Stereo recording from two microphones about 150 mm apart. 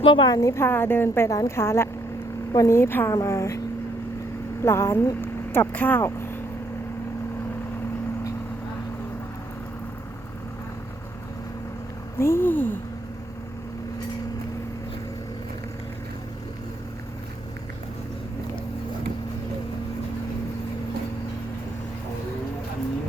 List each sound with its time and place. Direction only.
0.0 s a woman's voice: 35° left (ahead or behind)
4.6 s speech: 20° left (ahead or behind)
12.2 s a woman's voice: 15° left (ahead or behind)